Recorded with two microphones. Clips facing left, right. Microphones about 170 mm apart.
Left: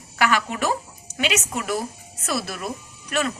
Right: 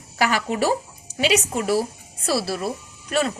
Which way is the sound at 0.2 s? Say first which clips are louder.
Right 1 dB; 35° right (ahead or behind).